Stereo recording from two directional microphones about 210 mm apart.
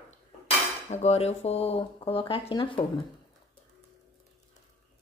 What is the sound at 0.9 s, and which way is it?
Speech, 30° left (ahead or behind).